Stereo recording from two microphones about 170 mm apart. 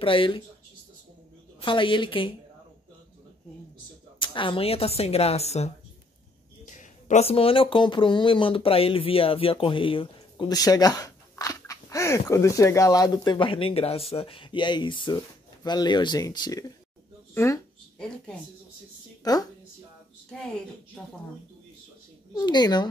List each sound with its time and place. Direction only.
0.0 s speech: 30° left (ahead or behind)
1.6 s speech: 30° left (ahead or behind)
4.2 s speech: 30° left (ahead or behind)
17.3 s speech: 10° left (ahead or behind)
19.2 s a woman's voice: 20° left (ahead or behind)
21.0 s speech: 5° left (ahead or behind)
22.3 s speech: 25° left (ahead or behind)